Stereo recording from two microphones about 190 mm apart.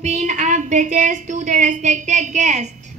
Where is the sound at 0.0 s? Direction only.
35° right (ahead or behind).